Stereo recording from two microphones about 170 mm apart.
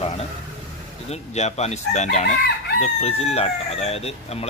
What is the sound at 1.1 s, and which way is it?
Speech, 40° left (ahead or behind).